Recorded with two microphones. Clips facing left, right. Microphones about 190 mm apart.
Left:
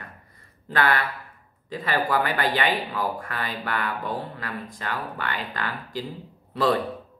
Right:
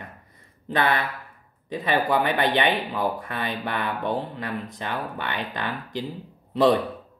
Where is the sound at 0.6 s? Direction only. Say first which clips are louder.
Even; 20° right (ahead or behind).